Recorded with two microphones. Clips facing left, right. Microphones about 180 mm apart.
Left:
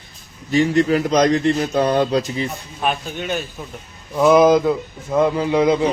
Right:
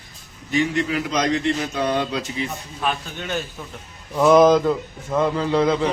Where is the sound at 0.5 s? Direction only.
35° left (ahead or behind).